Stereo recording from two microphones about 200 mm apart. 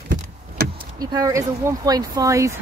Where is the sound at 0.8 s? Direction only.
20° right (ahead or behind).